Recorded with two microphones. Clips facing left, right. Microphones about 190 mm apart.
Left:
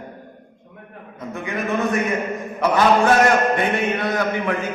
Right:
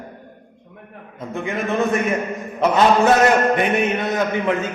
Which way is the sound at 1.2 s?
25° right (ahead or behind).